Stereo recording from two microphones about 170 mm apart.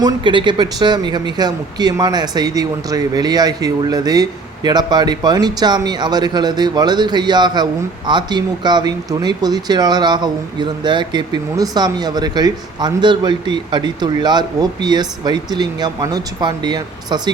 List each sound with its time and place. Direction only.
0.0 s speech: 30° right (ahead or behind)